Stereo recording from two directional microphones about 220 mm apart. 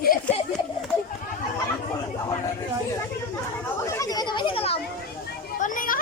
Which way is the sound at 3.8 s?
15° left (ahead or behind).